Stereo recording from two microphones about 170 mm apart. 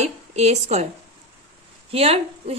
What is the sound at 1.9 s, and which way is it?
Speech, 35° right (ahead or behind).